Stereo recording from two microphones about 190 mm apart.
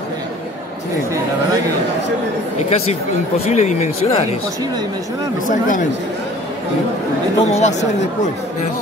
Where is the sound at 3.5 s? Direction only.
35° left (ahead or behind).